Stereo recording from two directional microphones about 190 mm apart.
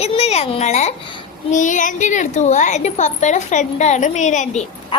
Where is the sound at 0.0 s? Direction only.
35° left (ahead or behind).